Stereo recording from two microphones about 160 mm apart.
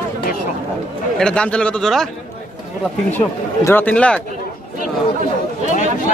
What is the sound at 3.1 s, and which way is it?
A man's voice, 15° left (ahead or behind).